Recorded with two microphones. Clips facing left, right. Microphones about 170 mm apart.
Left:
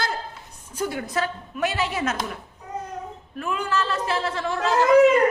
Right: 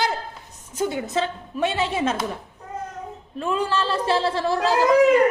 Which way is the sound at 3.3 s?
30° right (ahead or behind).